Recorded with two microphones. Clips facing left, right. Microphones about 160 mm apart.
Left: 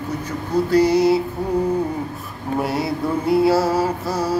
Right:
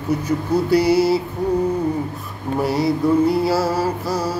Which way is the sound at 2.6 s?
Centre (ahead or behind).